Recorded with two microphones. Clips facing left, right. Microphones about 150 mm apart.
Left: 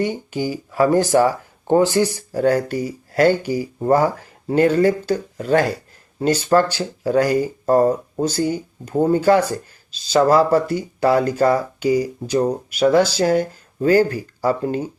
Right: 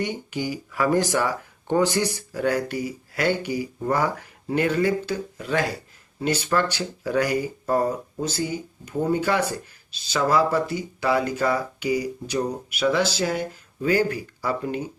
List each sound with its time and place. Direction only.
0.0 s speech: 30° left (ahead or behind)
9.0 s speech: 35° left (ahead or behind)
10.3 s speech: 45° left (ahead or behind)
11.5 s speech: 35° left (ahead or behind)
12.5 s speech: 45° left (ahead or behind)